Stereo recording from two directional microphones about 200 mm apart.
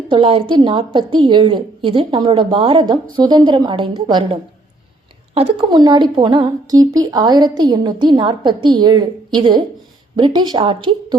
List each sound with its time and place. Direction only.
0.1 s a woman's voice: 25° right (ahead or behind)